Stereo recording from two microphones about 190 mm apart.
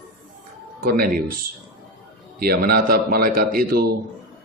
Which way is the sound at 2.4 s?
55° right (ahead or behind).